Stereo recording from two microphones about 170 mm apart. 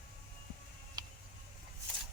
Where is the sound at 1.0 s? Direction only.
25° right (ahead or behind).